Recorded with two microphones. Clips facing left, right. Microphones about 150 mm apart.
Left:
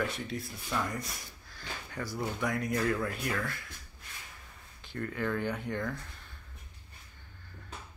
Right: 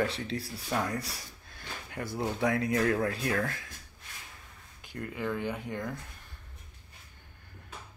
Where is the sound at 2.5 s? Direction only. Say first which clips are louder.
Right 4 dB; 80° right.